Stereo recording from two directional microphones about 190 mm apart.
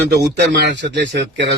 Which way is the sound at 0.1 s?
60° right (ahead or behind).